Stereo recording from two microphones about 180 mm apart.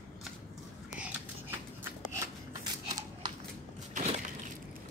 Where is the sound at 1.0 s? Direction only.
10° right (ahead or behind).